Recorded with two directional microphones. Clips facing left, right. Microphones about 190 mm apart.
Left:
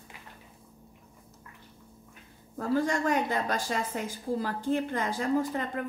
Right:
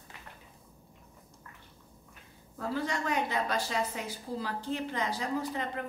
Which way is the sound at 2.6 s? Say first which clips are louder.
Left 6 dB; 45° left (ahead or behind).